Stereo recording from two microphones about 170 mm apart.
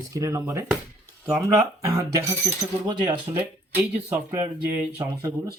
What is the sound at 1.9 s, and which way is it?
Speech, 15° right (ahead or behind).